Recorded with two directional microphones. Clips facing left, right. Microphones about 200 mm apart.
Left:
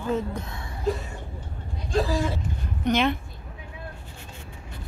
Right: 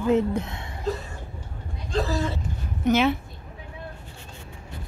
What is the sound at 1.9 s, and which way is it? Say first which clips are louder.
Vehicle: left 1 dB; 10° left (ahead or behind).